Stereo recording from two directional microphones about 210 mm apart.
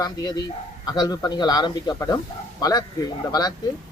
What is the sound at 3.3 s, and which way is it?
Speech, 20° left (ahead or behind).